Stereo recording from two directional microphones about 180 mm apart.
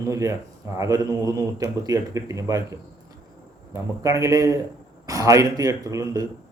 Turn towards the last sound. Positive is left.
turn(degrees=-15)  # may be behind; listen again after turning